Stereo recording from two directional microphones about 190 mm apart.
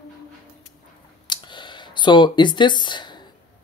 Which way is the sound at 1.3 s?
25° left (ahead or behind).